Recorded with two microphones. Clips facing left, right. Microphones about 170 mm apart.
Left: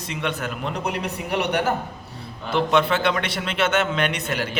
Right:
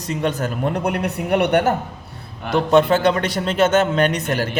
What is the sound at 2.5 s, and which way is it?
A man's voice, 40° right (ahead or behind).